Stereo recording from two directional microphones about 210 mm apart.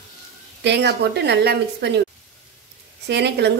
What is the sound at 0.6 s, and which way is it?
A woman's voice, 55° right (ahead or behind).